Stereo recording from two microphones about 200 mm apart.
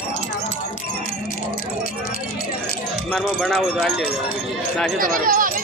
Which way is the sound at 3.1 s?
Centre (ahead or behind).